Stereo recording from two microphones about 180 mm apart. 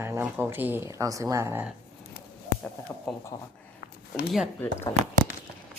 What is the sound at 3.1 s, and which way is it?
Speech, centre (ahead or behind).